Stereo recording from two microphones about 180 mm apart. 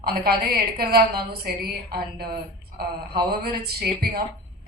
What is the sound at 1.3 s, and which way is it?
A woman's voice, 60° right (ahead or behind).